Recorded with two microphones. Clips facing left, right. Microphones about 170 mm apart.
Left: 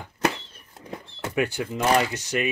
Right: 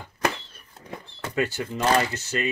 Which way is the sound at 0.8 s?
15° left (ahead or behind).